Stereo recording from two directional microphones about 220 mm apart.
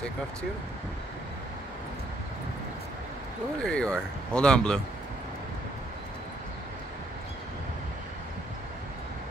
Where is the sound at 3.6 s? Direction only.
5° left (ahead or behind).